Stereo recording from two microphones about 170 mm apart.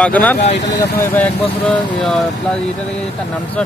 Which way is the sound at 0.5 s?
90° left.